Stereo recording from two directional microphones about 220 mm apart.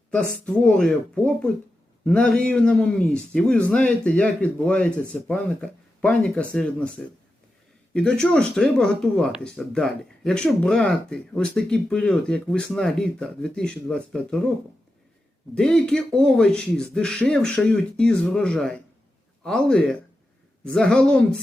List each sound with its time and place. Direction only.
0.4 s speech: 5° left (ahead or behind)
7.9 s speech: 5° left (ahead or behind)
15.5 s speech: 5° left (ahead or behind)